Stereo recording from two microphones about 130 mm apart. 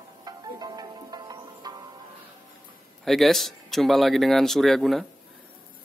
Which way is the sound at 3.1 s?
Centre (ahead or behind).